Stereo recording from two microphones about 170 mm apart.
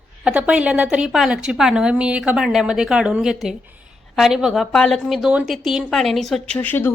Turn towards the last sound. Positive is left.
turn(degrees=10)  # may be behind; listen again after turning